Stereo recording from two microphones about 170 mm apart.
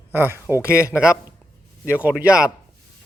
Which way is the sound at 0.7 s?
15° left (ahead or behind).